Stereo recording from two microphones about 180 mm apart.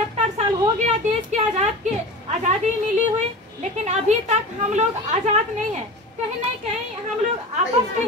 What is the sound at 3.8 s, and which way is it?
Speech, 40° right (ahead or behind).